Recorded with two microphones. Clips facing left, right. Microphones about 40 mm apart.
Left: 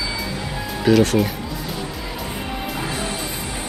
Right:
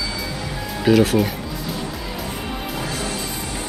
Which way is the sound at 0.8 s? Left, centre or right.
Centre.